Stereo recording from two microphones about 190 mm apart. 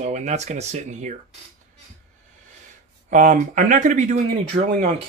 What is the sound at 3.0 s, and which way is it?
Speech, 40° right (ahead or behind).